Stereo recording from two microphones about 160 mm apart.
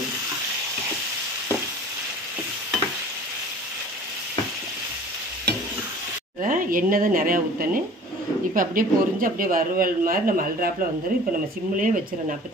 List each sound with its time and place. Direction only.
6.4 s speech: 60° right (ahead or behind)
11.7 s speech: 55° right (ahead or behind)